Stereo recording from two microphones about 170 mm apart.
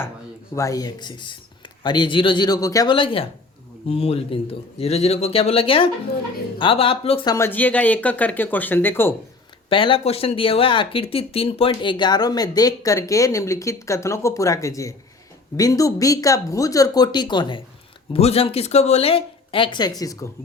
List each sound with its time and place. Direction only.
0.5 s speech: 20° left (ahead or behind); by 7.3 s 35° left (ahead or behind)
7.3 s speech: 15° left (ahead or behind)
9.6 s speech: 30° left (ahead or behind)